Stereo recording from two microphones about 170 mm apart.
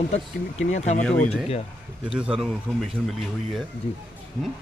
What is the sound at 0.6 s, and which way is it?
Speech, 45° left (ahead or behind).